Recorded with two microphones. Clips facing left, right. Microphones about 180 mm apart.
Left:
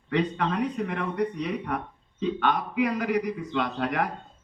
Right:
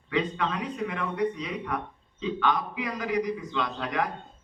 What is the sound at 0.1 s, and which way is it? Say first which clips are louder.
A man's voice: left 2 dB; 55° left (ahead or behind).